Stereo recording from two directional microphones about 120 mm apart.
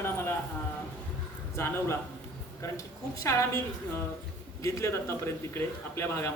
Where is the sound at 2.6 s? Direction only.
25° left (ahead or behind).